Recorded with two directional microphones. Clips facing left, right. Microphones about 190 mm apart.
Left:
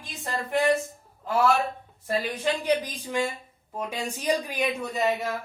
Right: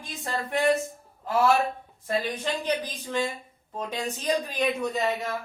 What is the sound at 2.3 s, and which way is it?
Speech, 10° left (ahead or behind).